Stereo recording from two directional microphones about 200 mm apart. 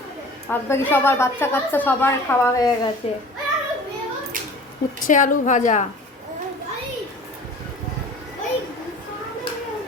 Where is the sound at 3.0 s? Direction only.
30° left (ahead or behind).